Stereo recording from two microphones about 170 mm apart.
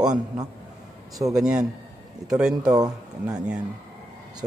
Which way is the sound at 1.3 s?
5° right (ahead or behind).